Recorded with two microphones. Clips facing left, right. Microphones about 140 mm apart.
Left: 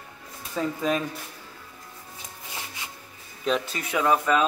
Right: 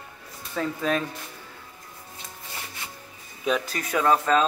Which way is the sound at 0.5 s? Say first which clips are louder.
Even; 5° left (ahead or behind).